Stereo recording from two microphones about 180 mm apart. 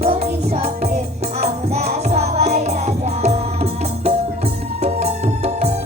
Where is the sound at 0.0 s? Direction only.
35° right (ahead or behind).